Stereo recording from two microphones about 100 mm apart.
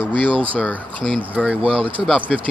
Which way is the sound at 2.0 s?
15° right (ahead or behind).